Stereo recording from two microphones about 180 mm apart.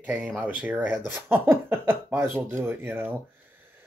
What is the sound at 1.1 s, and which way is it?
Speech, 10° right (ahead or behind).